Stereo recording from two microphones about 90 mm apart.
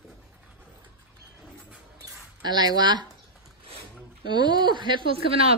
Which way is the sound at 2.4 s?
50° right (ahead or behind).